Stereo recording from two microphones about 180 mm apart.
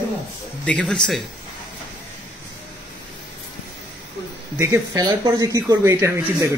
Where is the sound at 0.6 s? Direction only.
5° left (ahead or behind).